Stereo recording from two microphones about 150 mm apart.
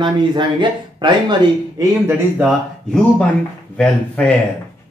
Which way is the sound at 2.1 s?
5° right (ahead or behind).